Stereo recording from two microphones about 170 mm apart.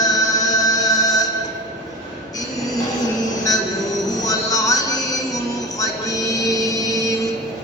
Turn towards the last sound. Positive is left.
turn(degrees=20)  # may be behind; listen again after turning